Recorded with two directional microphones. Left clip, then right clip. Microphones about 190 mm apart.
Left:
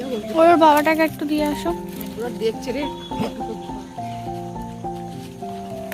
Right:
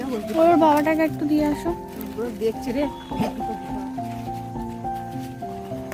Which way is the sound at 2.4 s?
60° right (ahead or behind).